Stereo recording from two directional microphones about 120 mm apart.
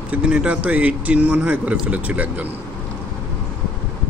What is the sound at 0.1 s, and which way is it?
Speech, 10° right (ahead or behind).